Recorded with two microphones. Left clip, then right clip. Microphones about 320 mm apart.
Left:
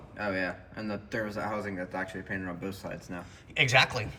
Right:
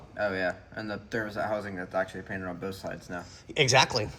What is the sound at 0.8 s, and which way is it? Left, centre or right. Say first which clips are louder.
Speech: right 1 dB; right.